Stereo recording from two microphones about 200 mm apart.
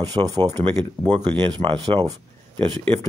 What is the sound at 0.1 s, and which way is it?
Speech, 20° right (ahead or behind).